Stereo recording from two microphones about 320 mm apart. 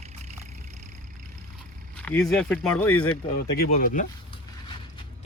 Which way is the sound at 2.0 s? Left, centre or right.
Centre.